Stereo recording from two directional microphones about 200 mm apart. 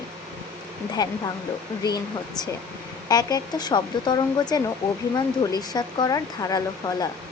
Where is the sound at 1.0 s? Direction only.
20° left (ahead or behind).